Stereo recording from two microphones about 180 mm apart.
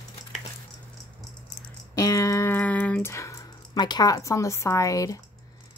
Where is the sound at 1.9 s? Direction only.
20° left (ahead or behind).